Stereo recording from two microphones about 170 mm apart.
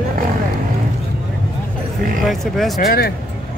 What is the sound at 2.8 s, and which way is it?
Speech, 65° left (ahead or behind).